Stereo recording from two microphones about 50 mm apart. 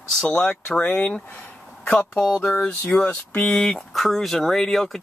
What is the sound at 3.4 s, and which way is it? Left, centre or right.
Speech, centre.